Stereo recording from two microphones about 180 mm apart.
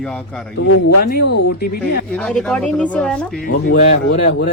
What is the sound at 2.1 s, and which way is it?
Speech, 5° left (ahead or behind).